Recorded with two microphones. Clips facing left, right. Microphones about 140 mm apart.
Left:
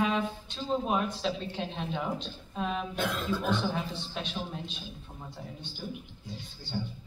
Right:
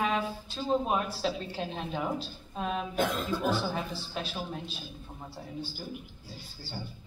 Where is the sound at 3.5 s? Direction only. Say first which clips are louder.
Even; 5° right (ahead or behind).